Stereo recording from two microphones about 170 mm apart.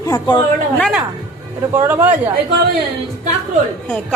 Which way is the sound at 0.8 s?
5° right (ahead or behind).